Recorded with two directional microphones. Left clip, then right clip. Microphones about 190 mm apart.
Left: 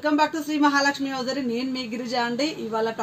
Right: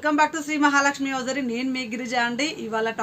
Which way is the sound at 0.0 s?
5° right (ahead or behind).